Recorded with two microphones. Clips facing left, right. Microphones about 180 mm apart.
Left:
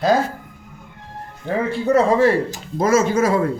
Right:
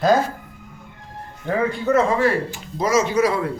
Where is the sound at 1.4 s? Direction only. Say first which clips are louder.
Left 1 dB; 35° left (ahead or behind).